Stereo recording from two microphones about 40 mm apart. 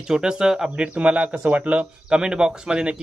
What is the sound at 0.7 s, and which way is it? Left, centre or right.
Speech, right.